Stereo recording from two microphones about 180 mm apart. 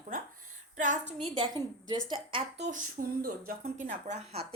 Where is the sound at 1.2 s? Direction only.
25° right (ahead or behind).